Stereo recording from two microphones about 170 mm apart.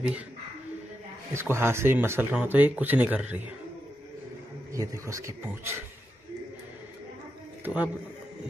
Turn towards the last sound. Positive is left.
turn(degrees=-10)  # may be behind; listen again after turning